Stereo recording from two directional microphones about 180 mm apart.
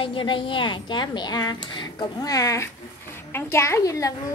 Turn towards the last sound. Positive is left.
turn(degrees=20)  # may be behind; listen again after turning